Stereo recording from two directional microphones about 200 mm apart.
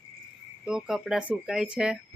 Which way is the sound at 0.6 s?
5° right (ahead or behind).